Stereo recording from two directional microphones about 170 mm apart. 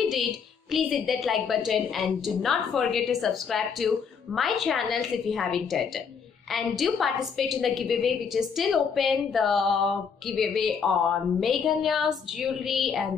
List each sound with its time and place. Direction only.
0.0 s a woman's voice: centre (ahead or behind)